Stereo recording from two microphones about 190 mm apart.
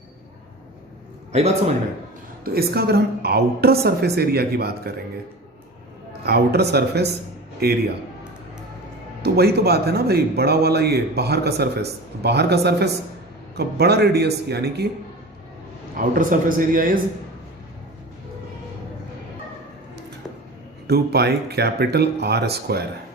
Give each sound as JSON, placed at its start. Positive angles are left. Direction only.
{"t": 1.3, "sound": "a man's voice", "side_deg": -35}
{"t": 2.4, "sound": "speech", "side_deg": -50}
{"t": 6.2, "sound": "speech", "side_deg": -60}
{"t": 9.2, "sound": "speech", "side_deg": -55}
{"t": 16.0, "sound": "a man's voice", "side_deg": -45}
{"t": 20.8, "sound": "speech", "side_deg": -55}